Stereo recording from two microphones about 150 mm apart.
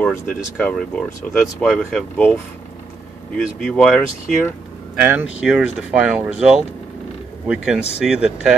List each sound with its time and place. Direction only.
0.0 s speech: 5° left (ahead or behind)
3.3 s speech: 10° left (ahead or behind)
5.0 s speech: 10° right (ahead or behind)